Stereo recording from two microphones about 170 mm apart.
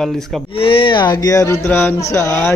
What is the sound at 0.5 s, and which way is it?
A man's voice, 30° left (ahead or behind).